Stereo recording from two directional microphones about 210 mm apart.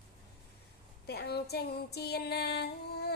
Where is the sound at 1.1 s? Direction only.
50° left (ahead or behind).